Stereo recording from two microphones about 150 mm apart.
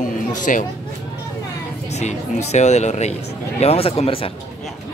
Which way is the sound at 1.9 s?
50° left (ahead or behind).